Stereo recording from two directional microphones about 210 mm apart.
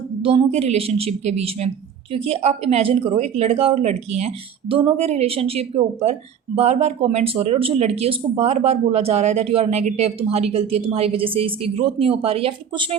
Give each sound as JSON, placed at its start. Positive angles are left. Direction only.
{"t": 0.2, "sound": "speech", "side_deg": -25}